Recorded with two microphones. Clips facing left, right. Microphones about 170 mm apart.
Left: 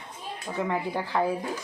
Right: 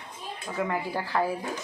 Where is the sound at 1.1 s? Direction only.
10° left (ahead or behind).